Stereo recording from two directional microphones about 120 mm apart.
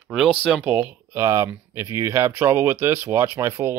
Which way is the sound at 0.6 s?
15° right (ahead or behind).